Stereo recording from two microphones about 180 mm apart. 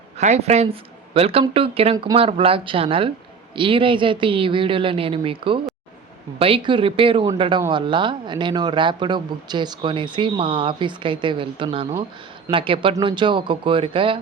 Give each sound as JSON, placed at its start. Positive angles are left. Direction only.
{"t": 0.2, "sound": "speech", "side_deg": -40}